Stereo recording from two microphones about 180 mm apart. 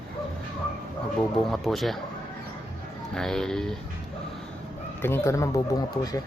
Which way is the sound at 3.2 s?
5° left (ahead or behind).